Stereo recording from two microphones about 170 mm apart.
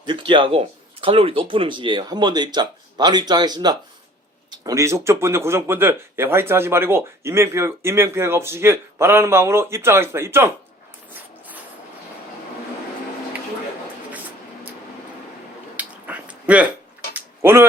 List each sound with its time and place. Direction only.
0.0 s speech: 30° right (ahead or behind)
15.7 s a sound: 10° right (ahead or behind)
17.2 s tick-tock: 15° right (ahead or behind)